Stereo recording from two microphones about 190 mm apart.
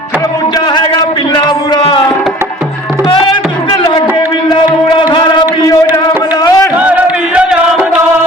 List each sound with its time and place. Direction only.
0.7 s a sound: 20° left (ahead or behind)
4.4 s music: 25° left (ahead or behind)
6.7 s music: 5° right (ahead or behind)